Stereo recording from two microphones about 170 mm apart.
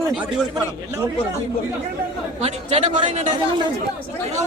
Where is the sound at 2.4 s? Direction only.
35° right (ahead or behind).